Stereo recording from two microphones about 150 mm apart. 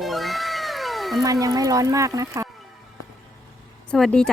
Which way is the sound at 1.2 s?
25° right (ahead or behind).